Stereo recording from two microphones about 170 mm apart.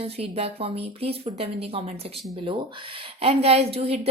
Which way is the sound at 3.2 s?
35° right (ahead or behind).